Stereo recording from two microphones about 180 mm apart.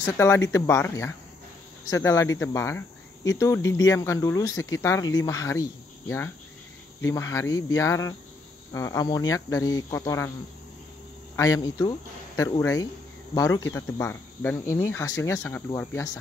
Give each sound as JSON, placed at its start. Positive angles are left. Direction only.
{"t": 0.0, "sound": "speech", "side_deg": 15}
{"t": 11.3, "sound": "speech", "side_deg": 20}